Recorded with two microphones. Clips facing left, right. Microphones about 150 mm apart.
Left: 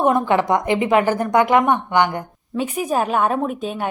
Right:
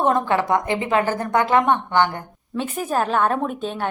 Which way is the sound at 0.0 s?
15° left (ahead or behind).